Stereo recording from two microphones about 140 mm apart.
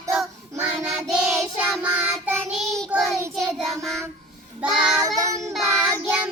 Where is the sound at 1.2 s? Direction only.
5° right (ahead or behind).